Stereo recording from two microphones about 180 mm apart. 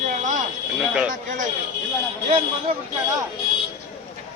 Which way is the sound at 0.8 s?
5° right (ahead or behind).